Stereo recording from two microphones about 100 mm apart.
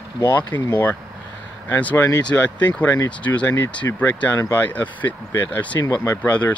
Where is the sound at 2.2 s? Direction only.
15° left (ahead or behind).